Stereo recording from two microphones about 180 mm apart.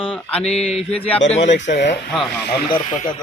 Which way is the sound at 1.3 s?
40° left (ahead or behind).